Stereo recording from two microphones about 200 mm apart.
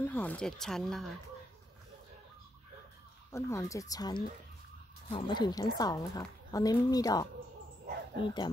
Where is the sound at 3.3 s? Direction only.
15° left (ahead or behind).